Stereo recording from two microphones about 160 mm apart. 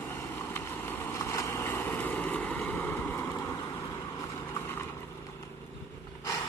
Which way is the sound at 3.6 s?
30° left (ahead or behind).